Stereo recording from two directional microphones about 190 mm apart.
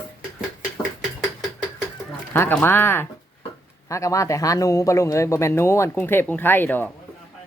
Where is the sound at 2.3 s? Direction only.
10° left (ahead or behind).